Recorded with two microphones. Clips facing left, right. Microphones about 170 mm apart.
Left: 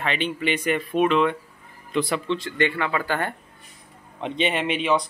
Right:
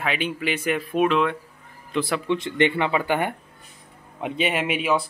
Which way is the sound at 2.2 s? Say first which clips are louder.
Right 2 dB; 20° right (ahead or behind).